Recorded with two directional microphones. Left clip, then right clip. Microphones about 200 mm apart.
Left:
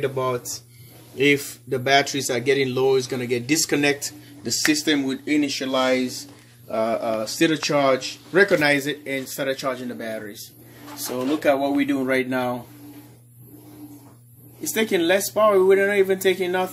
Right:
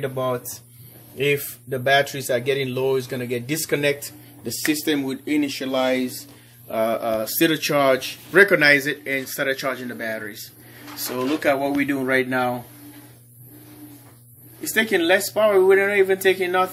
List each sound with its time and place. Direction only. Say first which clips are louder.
0.0 s speech: left 1 dB; 5° left (ahead or behind)
14.6 s speech: right 2 dB; 10° left (ahead or behind)